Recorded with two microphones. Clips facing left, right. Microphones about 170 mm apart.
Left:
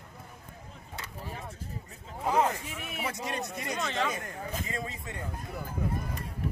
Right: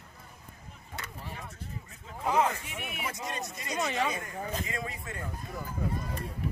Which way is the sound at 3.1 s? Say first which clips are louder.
Left 3 dB; 60° left (ahead or behind).